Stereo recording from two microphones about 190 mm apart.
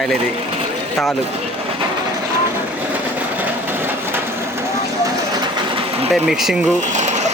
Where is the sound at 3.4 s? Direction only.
10° right (ahead or behind).